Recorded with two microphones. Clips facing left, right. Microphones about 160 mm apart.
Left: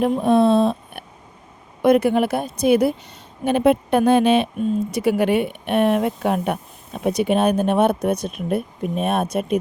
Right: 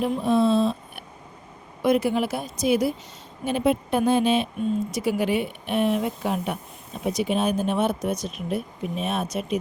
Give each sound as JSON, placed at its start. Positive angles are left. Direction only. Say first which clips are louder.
{"t": 0.0, "sound": "speech", "louder": "left 5 dB", "side_deg": 55}